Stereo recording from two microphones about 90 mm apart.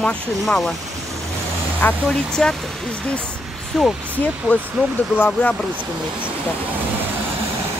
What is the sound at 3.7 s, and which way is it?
Speech, 5° left (ahead or behind).